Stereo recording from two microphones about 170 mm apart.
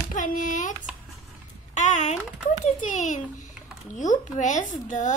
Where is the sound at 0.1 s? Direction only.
50° left (ahead or behind).